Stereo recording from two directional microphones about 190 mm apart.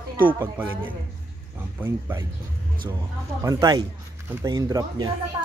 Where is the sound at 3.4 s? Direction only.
20° right (ahead or behind).